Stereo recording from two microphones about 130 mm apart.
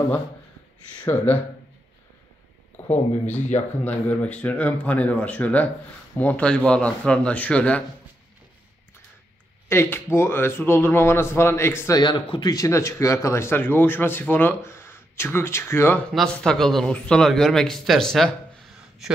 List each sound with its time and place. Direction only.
0.9 s speech: 10° left (ahead or behind)
3.8 s speech: 10° left (ahead or behind)
9.7 s speech: 15° left (ahead or behind)
12.0 s speech: 40° left (ahead or behind); by 16.0 s 20° left (ahead or behind)
16.1 s speech: 5° left (ahead or behind)